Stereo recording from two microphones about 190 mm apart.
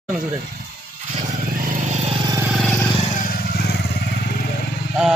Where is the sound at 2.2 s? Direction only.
15° right (ahead or behind).